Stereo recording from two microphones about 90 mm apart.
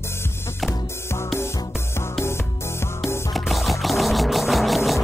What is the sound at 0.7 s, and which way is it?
Music, 30° left (ahead or behind).